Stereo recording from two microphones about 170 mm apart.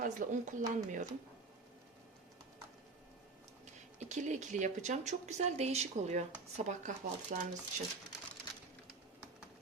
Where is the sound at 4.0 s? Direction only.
45° right (ahead or behind).